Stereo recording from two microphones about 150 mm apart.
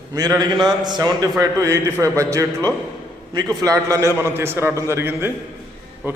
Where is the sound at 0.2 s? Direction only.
25° right (ahead or behind).